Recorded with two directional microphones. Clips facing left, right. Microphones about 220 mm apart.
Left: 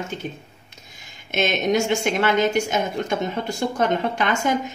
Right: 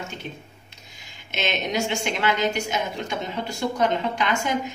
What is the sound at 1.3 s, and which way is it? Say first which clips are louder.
A woman's voice: left 6 dB; 50° left (ahead or behind).